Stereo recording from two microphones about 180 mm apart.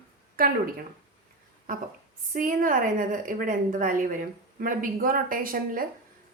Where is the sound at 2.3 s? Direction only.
50° right (ahead or behind).